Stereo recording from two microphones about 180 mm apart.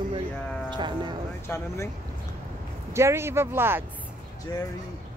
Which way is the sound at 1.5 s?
15° left (ahead or behind).